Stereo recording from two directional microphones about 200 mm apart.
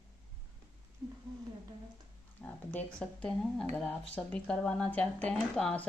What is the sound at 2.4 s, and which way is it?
Speech, 5° left (ahead or behind).